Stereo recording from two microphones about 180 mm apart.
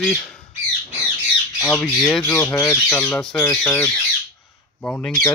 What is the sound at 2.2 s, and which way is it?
Speech, 15° left (ahead or behind).